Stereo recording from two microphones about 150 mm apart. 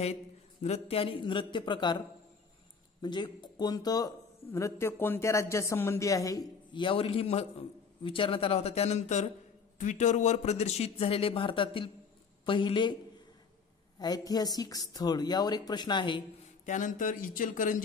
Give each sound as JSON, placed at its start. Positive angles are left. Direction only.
{"t": 0.0, "sound": "a man's voice", "side_deg": 45}
{"t": 13.9, "sound": "a man's voice", "side_deg": 25}
{"t": 16.6, "sound": "speech", "side_deg": 55}